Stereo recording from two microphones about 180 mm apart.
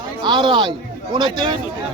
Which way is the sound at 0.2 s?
25° right (ahead or behind).